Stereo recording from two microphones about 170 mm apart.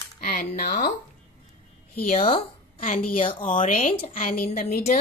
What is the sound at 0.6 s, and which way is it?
Speech, 65° left (ahead or behind).